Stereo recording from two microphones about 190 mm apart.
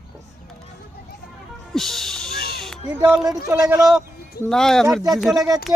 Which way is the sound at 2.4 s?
55° left (ahead or behind).